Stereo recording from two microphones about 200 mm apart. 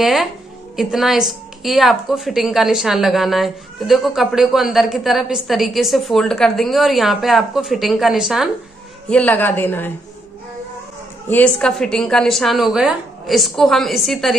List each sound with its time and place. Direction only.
0.0 s a woman's voice: centre (ahead or behind)
11.2 s a woman's voice: 5° left (ahead or behind)